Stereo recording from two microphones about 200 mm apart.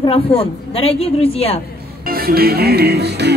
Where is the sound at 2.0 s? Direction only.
50° right (ahead or behind).